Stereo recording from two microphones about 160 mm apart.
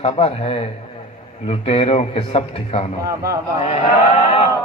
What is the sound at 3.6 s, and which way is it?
Speech, 40° left (ahead or behind).